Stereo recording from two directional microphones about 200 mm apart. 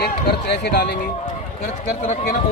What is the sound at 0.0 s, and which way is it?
Speech, 55° left (ahead or behind).